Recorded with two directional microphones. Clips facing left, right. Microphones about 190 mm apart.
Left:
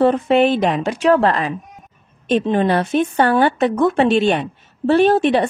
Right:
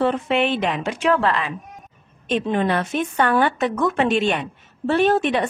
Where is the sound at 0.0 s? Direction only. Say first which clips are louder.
Left 6 dB; 40° left (ahead or behind).